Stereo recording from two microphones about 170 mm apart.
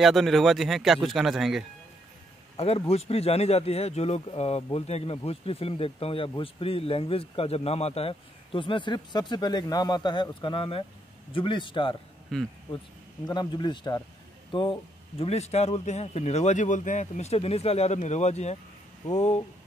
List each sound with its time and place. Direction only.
0.0 s speech: centre (ahead or behind)
2.5 s a man's voice: 35° left (ahead or behind)
12.3 s speech: centre (ahead or behind)
13.3 s a man's voice: 25° left (ahead or behind); by 19.4 s 40° left (ahead or behind)